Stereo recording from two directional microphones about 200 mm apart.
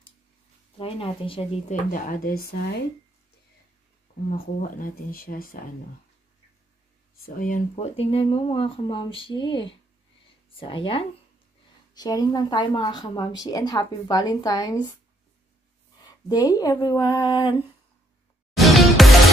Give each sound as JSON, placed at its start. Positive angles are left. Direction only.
{"t": 0.7, "sound": "speech", "side_deg": 25}
{"t": 1.9, "sound": "speech", "side_deg": 40}
{"t": 4.6, "sound": "speech", "side_deg": 45}
{"t": 7.2, "sound": "speech", "side_deg": 45}
{"t": 16.0, "sound": "speech", "side_deg": 20}
{"t": 18.6, "sound": "music", "side_deg": 0}